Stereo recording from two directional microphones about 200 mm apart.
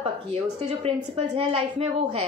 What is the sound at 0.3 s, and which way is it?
A woman's voice, 30° right (ahead or behind).